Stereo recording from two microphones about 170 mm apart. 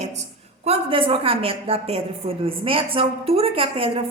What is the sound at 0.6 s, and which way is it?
A woman's voice, 30° right (ahead or behind).